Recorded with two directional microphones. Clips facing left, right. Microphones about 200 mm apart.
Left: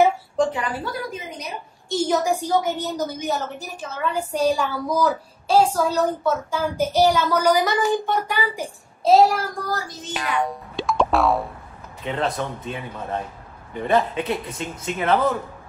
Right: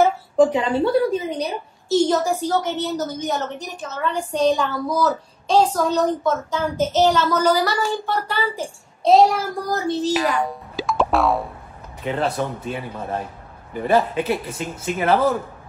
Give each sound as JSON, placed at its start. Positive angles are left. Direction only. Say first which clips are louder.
{"t": 0.5, "sound": "a woman's voice", "louder": "right 8 dB", "side_deg": -20}
{"t": 2.0, "sound": "a woman's voice", "louder": "right 1 dB", "side_deg": 10}
{"t": 9.0, "sound": "speech", "louder": "right 1 dB", "side_deg": 5}
{"t": 9.7, "sound": "speech", "louder": "right 7 dB", "side_deg": -25}
{"t": 10.4, "sound": "music", "louder": "even", "side_deg": 0}
{"t": 12.0, "sound": "speech", "louder": "right 2 dB", "side_deg": -5}